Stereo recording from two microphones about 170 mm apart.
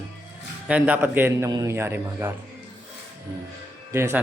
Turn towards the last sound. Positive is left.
turn(degrees=-15)  # may be behind; listen again after turning